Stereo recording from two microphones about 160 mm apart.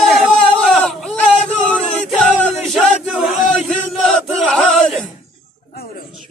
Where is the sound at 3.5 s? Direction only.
5° left (ahead or behind).